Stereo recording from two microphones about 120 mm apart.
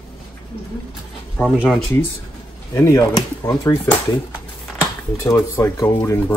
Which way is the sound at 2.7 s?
25° left (ahead or behind).